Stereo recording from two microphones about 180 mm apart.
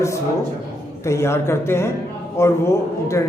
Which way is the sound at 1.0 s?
15° left (ahead or behind).